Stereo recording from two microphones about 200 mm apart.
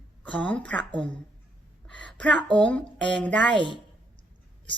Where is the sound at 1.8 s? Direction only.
5° left (ahead or behind).